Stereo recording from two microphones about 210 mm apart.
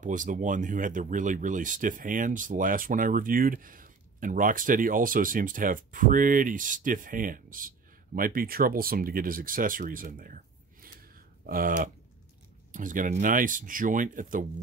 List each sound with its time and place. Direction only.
0.0 s speech: 35° right (ahead or behind)